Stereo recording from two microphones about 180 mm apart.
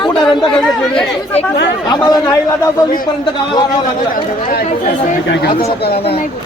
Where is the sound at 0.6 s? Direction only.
5° left (ahead or behind).